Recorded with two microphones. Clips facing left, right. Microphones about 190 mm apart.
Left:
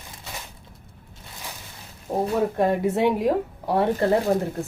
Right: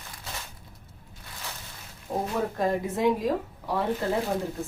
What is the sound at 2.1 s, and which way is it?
Speech, 70° left (ahead or behind).